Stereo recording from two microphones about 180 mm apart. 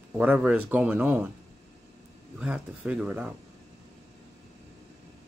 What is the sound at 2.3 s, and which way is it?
Speech, 5° right (ahead or behind).